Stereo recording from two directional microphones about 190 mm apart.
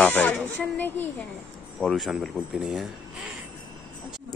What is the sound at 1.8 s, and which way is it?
A man's voice, centre (ahead or behind).